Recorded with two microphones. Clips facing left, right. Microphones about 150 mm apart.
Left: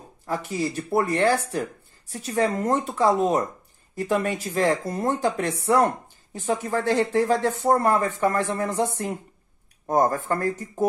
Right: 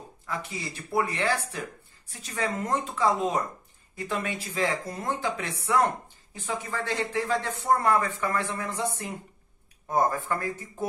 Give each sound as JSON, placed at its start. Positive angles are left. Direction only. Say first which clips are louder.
{"t": 0.3, "sound": "speech", "louder": "left 8 dB", "side_deg": 40}